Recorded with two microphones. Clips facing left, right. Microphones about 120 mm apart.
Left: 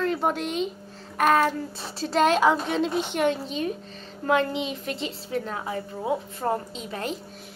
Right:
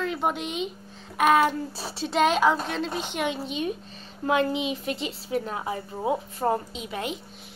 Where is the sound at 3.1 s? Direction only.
10° right (ahead or behind).